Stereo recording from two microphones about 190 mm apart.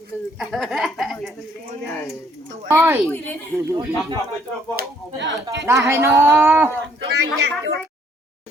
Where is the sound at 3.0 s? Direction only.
10° left (ahead or behind).